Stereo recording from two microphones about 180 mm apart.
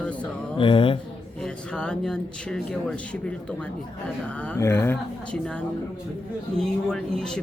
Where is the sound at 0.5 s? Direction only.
30° left (ahead or behind).